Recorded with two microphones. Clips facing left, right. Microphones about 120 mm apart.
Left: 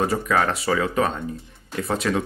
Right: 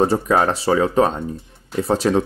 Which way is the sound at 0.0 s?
30° right (ahead or behind).